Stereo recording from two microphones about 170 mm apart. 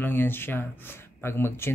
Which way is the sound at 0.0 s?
10° left (ahead or behind).